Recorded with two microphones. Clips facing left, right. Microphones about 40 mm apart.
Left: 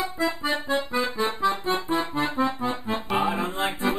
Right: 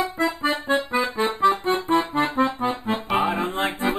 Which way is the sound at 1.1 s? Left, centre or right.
Centre.